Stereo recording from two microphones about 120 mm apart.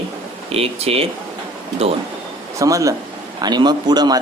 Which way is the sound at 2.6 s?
25° right (ahead or behind).